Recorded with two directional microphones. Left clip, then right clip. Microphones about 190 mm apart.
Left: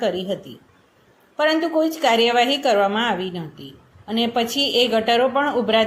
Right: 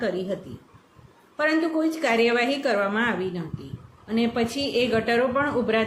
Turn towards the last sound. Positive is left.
turn(degrees=15)  # may be behind; listen again after turning